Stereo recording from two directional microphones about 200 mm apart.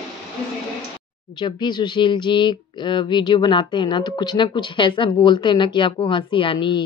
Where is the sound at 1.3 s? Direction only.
20° left (ahead or behind).